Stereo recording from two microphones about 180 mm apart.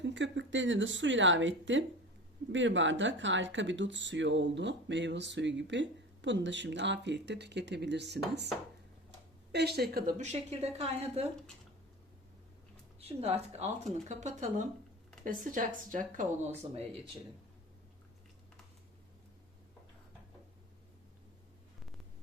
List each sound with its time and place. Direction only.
0.0 s speech: 85° right
9.5 s speech: 65° right (ahead or behind)
10.2 s speech: 35° right (ahead or behind)
13.0 s speech: 35° right (ahead or behind)